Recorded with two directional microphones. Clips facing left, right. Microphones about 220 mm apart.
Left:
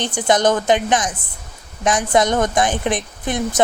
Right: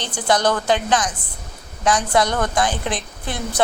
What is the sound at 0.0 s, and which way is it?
Speech, 20° left (ahead or behind).